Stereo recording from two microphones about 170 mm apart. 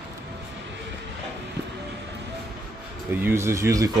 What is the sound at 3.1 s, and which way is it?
Speech, 10° right (ahead or behind).